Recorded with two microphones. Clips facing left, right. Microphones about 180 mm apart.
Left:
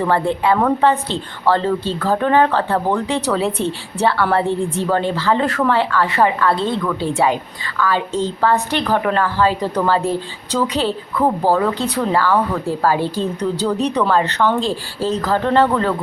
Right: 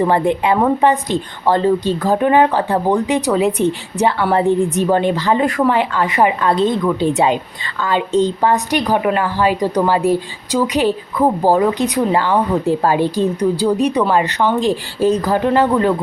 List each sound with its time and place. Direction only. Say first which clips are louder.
0.0 s a woman's voice: right 2 dB; 15° right (ahead or behind)